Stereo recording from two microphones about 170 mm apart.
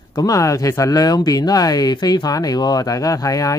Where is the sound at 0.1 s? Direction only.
20° left (ahead or behind).